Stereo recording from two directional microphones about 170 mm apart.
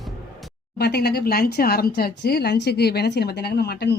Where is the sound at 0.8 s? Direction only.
70° left (ahead or behind).